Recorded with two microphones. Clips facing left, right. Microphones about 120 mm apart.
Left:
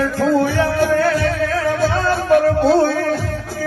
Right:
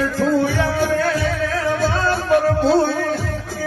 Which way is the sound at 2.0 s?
Centre (ahead or behind).